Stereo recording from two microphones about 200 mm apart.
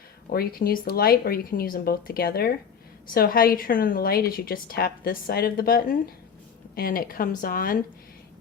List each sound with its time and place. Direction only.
0.3 s a woman's voice: 45° left (ahead or behind)